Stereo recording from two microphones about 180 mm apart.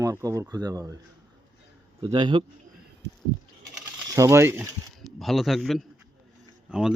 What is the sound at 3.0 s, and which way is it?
Goat, 75° right (ahead or behind).